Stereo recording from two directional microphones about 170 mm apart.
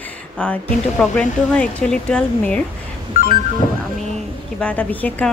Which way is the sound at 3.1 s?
50° left (ahead or behind).